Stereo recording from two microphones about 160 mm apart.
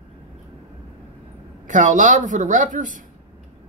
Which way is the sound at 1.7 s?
50° right (ahead or behind).